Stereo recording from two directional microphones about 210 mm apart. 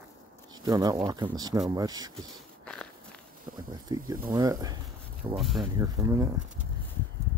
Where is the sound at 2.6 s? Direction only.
5° left (ahead or behind).